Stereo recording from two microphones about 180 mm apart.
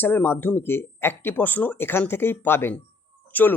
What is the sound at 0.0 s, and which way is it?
Speech, 10° left (ahead or behind).